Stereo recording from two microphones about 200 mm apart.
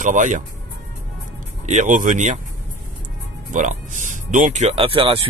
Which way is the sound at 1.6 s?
40° right (ahead or behind).